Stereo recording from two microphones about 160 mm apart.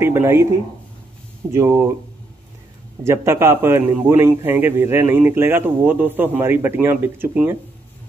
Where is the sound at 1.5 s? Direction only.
15° right (ahead or behind).